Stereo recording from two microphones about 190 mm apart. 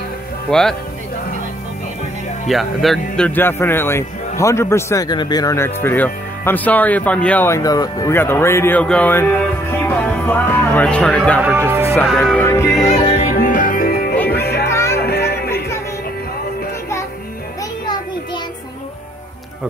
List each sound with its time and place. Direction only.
0.5 s speech: 5° left (ahead or behind)
2.4 s speech: centre (ahead or behind)
11.4 s speech: 10° right (ahead or behind)
12.3 s speech: 10° left (ahead or behind)
13.3 s music: 45° left (ahead or behind)
14.7 s music: 15° left (ahead or behind)
15.0 s music: 55° left (ahead or behind)